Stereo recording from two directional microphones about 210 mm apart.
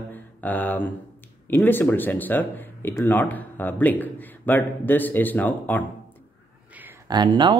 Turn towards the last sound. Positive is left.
turn(degrees=-20)  # may be behind; listen again after turning